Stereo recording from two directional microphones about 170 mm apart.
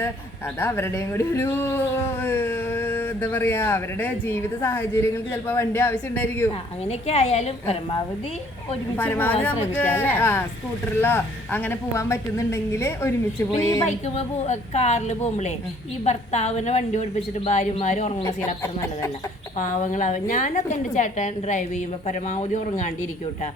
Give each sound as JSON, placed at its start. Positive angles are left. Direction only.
{"t": 0.6, "sound": "speech", "side_deg": 15}
{"t": 6.8, "sound": "a woman's voice", "side_deg": 40}
{"t": 9.0, "sound": "speech", "side_deg": 10}
{"t": 13.8, "sound": "a woman's voice", "side_deg": 40}
{"t": 18.2, "sound": "speech", "side_deg": 15}
{"t": 19.5, "sound": "a woman's voice", "side_deg": 45}